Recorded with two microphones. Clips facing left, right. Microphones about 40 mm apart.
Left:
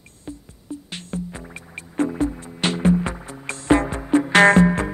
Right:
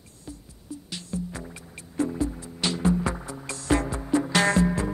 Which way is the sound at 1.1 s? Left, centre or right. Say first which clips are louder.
Left 2 dB; left.